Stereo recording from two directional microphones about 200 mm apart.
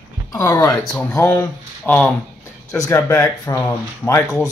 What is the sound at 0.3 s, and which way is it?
Speech, 15° left (ahead or behind).